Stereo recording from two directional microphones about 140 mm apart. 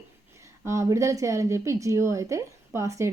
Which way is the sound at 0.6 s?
20° right (ahead or behind).